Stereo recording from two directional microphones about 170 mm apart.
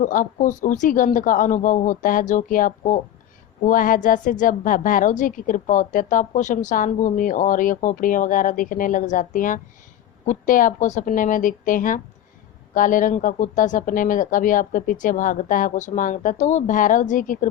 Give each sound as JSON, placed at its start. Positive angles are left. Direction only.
{"t": 0.0, "sound": "a woman's voice", "side_deg": 50}